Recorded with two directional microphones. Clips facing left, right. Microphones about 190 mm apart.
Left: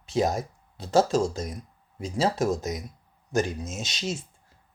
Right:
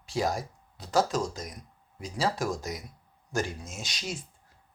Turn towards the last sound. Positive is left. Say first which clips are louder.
# left 5 dB
turn(degrees=25)  # may be behind; listen again after turning